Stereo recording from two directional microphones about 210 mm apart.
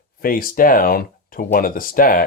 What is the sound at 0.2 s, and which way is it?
Speech, 45° left (ahead or behind).